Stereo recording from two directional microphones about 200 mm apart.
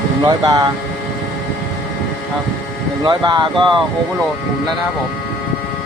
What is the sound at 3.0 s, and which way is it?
Speech, 20° right (ahead or behind).